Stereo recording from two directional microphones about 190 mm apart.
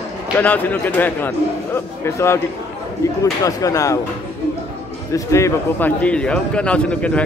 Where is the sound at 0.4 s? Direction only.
10° left (ahead or behind).